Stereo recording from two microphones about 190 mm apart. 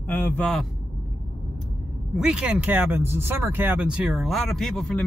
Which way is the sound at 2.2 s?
5° right (ahead or behind).